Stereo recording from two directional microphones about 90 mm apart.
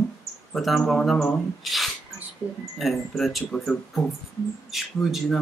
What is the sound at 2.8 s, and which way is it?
Speech, centre (ahead or behind).